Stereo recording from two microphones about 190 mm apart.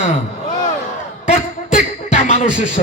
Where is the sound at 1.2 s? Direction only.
40° left (ahead or behind).